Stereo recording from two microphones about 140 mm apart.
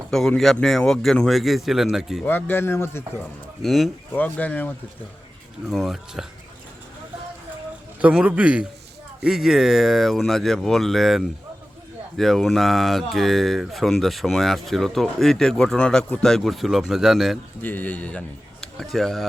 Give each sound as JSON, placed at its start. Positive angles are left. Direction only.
{"t": 0.1, "sound": "speech", "side_deg": 0}
{"t": 2.2, "sound": "speech", "side_deg": 15}
{"t": 3.6, "sound": "speech", "side_deg": 0}
{"t": 4.1, "sound": "speech", "side_deg": 10}
{"t": 5.6, "sound": "speech", "side_deg": 0}
{"t": 8.0, "sound": "a man's voice", "side_deg": -10}
{"t": 17.6, "sound": "a man's voice", "side_deg": 10}